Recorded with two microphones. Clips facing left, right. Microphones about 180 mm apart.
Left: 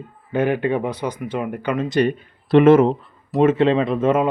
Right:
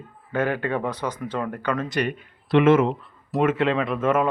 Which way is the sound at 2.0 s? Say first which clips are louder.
Left 7 dB; 30° left (ahead or behind).